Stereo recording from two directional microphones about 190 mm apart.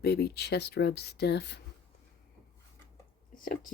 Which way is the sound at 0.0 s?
60° left (ahead or behind).